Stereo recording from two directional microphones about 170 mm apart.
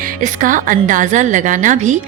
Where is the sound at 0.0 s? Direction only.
50° right (ahead or behind).